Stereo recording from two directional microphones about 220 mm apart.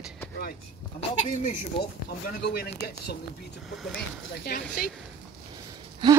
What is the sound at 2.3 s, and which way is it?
Speech, 45° left (ahead or behind).